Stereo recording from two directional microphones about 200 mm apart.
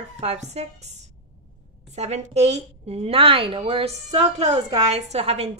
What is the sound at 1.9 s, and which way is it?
A woman's voice, 35° right (ahead or behind).